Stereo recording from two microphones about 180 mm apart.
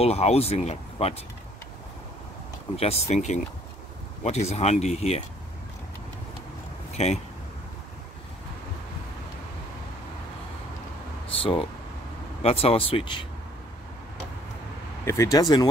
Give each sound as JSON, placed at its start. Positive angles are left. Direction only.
{"t": 0.0, "sound": "speech", "side_deg": 35}
{"t": 2.8, "sound": "speech", "side_deg": 35}
{"t": 6.9, "sound": "a sound", "side_deg": 35}
{"t": 11.3, "sound": "speech", "side_deg": 30}
{"t": 15.0, "sound": "speech", "side_deg": 20}